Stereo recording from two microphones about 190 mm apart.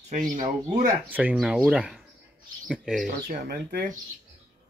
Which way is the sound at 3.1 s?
45° right (ahead or behind).